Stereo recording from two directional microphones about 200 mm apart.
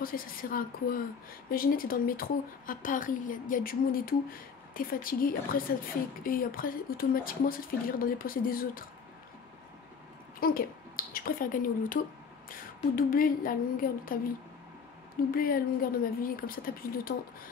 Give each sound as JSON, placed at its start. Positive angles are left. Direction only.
{"t": 0.0, "sound": "speech", "side_deg": 45}
{"t": 10.4, "sound": "speech", "side_deg": 45}
{"t": 15.3, "sound": "speech", "side_deg": 45}